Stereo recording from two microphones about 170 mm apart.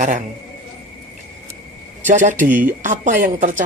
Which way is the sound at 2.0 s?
50° right (ahead or behind).